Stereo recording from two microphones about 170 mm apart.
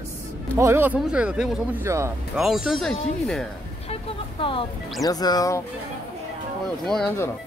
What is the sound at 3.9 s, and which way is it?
Speech, 30° left (ahead or behind).